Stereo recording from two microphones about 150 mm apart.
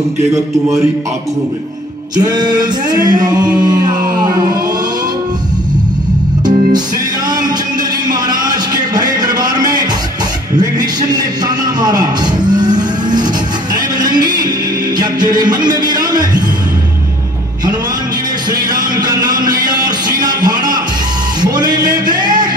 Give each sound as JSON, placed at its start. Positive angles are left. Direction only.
{"t": 2.1, "sound": "male singing", "side_deg": -25}
{"t": 3.5, "sound": "music", "side_deg": -25}
{"t": 8.1, "sound": "a sound", "side_deg": -25}
{"t": 10.6, "sound": "music", "side_deg": -25}
{"t": 18.9, "sound": "music", "side_deg": -25}